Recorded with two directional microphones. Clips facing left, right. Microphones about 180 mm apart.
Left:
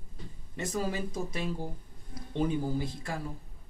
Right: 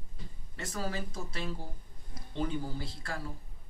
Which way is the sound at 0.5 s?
15° left (ahead or behind).